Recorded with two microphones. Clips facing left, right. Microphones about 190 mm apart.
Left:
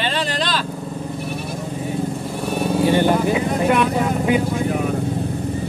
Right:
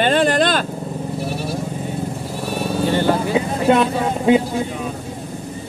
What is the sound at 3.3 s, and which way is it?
Vehicle, 25° right (ahead or behind).